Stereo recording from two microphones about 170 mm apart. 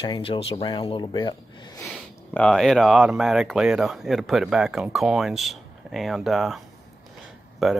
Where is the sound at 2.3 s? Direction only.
5° left (ahead or behind).